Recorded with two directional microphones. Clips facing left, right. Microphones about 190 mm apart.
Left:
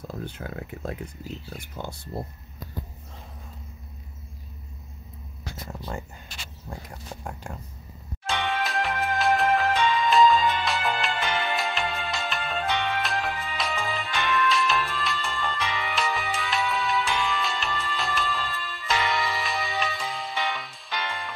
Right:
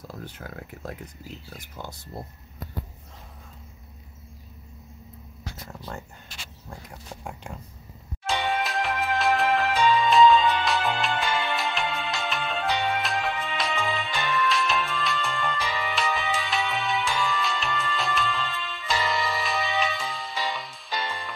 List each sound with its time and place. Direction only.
0.1 s speech: 20° left (ahead or behind)
5.7 s a sound: 15° left (ahead or behind)
6.7 s speech: 15° left (ahead or behind)
8.6 s music: centre (ahead or behind)